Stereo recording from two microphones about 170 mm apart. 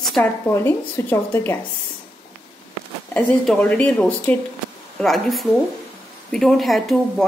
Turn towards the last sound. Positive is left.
turn(degrees=0)  # may be behind; listen again after turning